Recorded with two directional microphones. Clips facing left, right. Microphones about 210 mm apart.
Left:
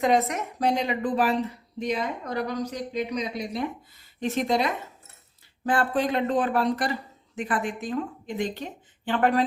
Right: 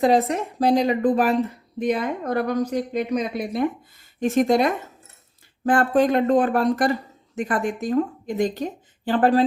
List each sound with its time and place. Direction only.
0.0 s speech: 30° right (ahead or behind)